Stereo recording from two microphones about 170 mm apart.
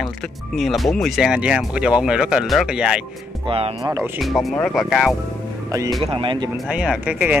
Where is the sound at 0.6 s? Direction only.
Centre (ahead or behind).